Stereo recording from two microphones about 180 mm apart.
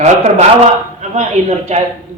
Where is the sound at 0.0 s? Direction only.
35° right (ahead or behind).